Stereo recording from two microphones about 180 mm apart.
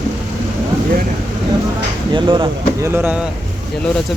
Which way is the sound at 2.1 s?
25° right (ahead or behind).